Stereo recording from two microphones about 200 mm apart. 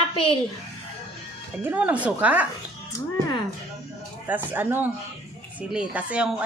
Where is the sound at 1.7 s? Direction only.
10° right (ahead or behind).